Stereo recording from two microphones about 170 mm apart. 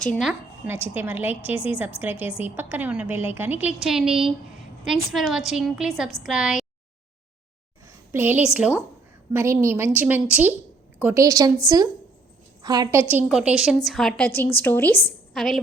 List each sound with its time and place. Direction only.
0.0 s a woman's voice: centre (ahead or behind)
8.1 s a woman's voice: 10° right (ahead or behind)
12.6 s a woman's voice: 25° right (ahead or behind); by 15.5 s centre (ahead or behind)